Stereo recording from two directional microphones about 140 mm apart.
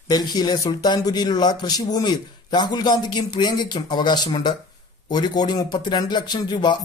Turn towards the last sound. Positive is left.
turn(degrees=30)  # may be behind; listen again after turning